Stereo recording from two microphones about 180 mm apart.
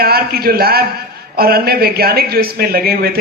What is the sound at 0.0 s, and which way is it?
A man's voice, 60° right (ahead or behind).